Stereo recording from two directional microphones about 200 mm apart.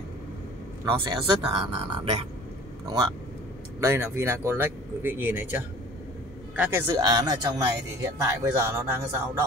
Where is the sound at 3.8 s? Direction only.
15° right (ahead or behind).